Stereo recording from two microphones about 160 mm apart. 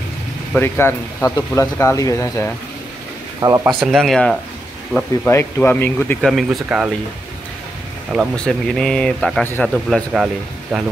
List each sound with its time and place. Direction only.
0.6 s speech: 15° left (ahead or behind)
3.3 s speech: 20° right (ahead or behind)
3.6 s speech: centre (ahead or behind)
5.2 s speech: 15° left (ahead or behind)
6.2 s speech: centre (ahead or behind)
8.4 s speech: 5° left (ahead or behind)